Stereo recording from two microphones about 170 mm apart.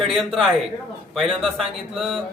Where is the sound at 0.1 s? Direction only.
Centre (ahead or behind).